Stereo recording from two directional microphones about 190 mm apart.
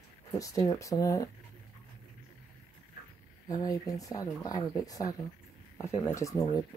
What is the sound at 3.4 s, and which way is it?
Speech, 20° left (ahead or behind).